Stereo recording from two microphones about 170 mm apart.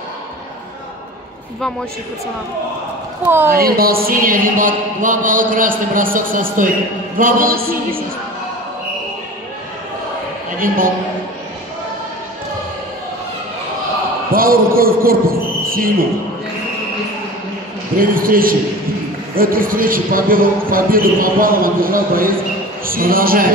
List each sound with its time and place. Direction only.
3.3 s a woman's voice: 15° right (ahead or behind)
3.5 s a man's voice: 60° right (ahead or behind)
14.3 s a man's voice: 60° right (ahead or behind)
17.9 s a man's voice: 55° right (ahead or behind)